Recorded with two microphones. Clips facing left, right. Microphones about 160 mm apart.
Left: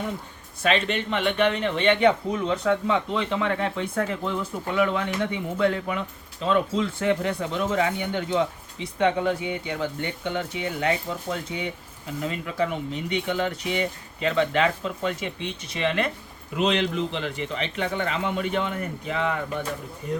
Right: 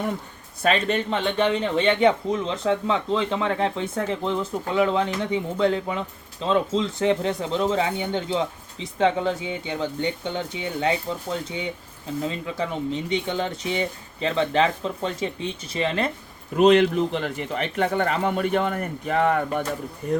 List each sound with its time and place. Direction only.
0.6 s speech: 40° right (ahead or behind)
12.2 s speech: 30° right (ahead or behind)
16.6 s a man's voice: 50° right (ahead or behind)